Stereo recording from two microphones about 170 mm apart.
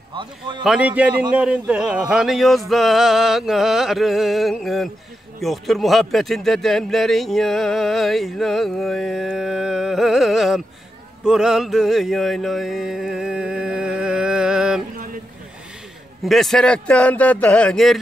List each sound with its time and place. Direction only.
0.1 s a man's voice: 30° right (ahead or behind)
0.7 s a man's voice: 5° right (ahead or behind)
16.3 s a man's voice: centre (ahead or behind)